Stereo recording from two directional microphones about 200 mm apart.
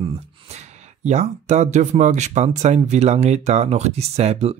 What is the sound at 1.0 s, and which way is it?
Speech, 35° right (ahead or behind).